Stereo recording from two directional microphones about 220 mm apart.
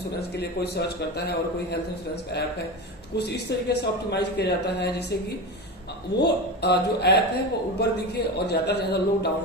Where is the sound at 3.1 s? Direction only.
50° left (ahead or behind).